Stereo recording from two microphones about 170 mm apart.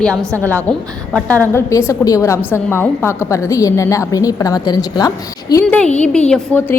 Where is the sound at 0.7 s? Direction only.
5° left (ahead or behind); by 5.6 s 20° left (ahead or behind).